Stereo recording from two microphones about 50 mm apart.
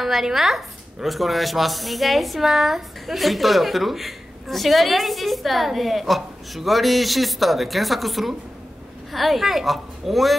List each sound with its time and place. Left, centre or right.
0.0 s a woman's voice: centre